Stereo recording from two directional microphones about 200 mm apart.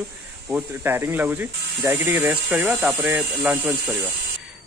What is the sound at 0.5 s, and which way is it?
Speech, 10° right (ahead or behind).